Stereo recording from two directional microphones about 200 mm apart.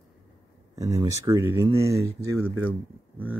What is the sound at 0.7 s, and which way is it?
Speech, 20° right (ahead or behind).